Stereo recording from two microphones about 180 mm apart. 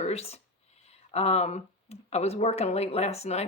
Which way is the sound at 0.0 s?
35° left (ahead or behind).